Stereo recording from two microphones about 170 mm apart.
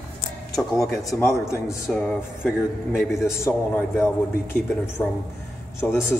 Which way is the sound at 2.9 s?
15° left (ahead or behind).